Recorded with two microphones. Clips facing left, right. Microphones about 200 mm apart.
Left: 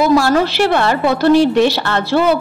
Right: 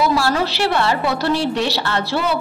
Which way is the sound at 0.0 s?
50° left (ahead or behind).